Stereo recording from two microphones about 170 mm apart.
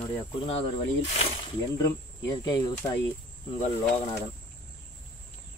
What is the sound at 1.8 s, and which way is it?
Speech, 20° left (ahead or behind).